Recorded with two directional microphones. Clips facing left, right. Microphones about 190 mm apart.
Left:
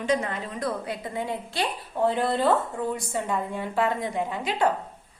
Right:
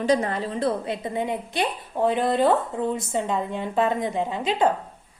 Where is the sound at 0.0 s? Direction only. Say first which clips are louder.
Right 4 dB; 35° right (ahead or behind); by 4.7 s 20° right (ahead or behind).